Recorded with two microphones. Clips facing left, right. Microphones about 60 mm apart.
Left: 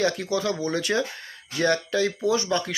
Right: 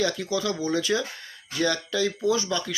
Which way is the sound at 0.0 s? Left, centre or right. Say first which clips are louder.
Left 2 dB; left.